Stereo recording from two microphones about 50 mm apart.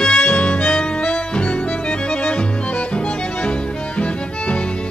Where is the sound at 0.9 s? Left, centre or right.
Left.